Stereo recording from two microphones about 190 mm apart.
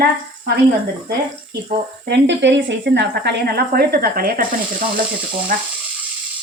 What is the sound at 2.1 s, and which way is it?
Speech, 70° right (ahead or behind).